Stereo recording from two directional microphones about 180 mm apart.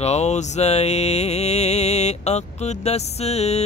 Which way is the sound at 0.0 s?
40° left (ahead or behind).